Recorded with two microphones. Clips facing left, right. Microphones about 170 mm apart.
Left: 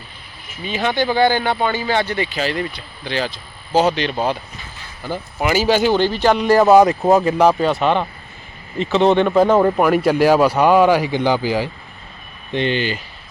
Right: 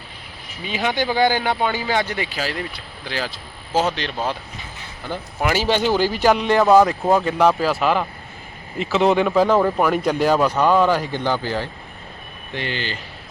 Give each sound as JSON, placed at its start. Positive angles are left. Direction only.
{"t": 0.6, "sound": "speech", "side_deg": -10}
{"t": 6.4, "sound": "speech", "side_deg": 5}
{"t": 12.5, "sound": "speech", "side_deg": 20}